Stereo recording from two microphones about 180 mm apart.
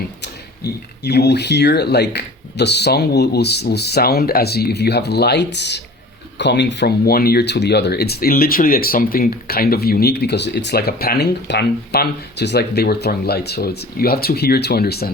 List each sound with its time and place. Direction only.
0.2 s speech: 65° left (ahead or behind)